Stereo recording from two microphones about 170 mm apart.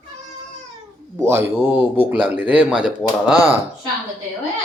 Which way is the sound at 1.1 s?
15° right (ahead or behind).